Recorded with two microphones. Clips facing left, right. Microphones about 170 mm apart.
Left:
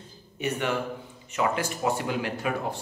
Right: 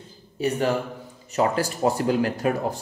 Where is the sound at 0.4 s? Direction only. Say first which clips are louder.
Right 5 dB; 35° right (ahead or behind).